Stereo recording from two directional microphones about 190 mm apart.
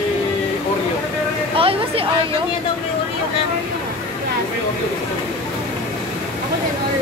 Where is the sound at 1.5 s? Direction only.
30° right (ahead or behind).